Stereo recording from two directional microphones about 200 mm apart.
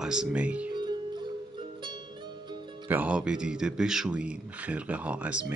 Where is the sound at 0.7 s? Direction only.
20° right (ahead or behind).